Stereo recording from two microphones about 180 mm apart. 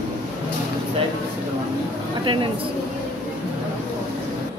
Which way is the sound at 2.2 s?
25° right (ahead or behind).